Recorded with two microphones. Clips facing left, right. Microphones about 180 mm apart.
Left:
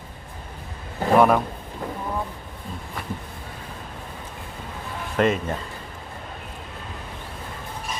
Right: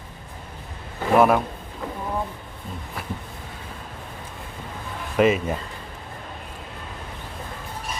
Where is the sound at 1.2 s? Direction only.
5° right (ahead or behind).